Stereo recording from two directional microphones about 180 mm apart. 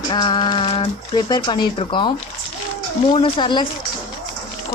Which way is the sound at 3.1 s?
30° left (ahead or behind).